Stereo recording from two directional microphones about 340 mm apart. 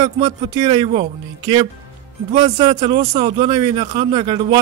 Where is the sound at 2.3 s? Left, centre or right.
Centre.